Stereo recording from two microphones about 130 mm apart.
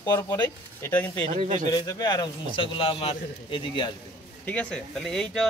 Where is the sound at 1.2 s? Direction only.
55° right (ahead or behind).